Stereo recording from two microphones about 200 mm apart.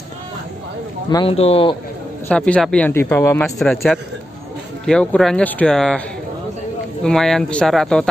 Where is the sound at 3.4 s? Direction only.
Centre (ahead or behind).